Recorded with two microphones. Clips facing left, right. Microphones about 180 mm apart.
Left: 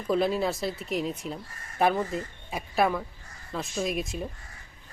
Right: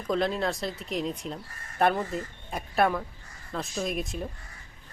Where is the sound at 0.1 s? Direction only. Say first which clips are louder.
Left 2 dB; 5° left (ahead or behind).